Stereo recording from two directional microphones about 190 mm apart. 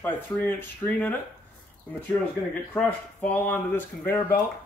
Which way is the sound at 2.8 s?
10° left (ahead or behind).